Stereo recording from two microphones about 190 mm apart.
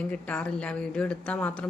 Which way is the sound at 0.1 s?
5° left (ahead or behind).